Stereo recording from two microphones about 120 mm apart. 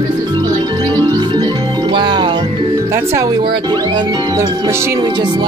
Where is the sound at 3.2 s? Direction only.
40° right (ahead or behind).